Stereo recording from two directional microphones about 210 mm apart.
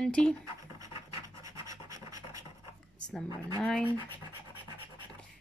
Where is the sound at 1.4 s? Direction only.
15° right (ahead or behind).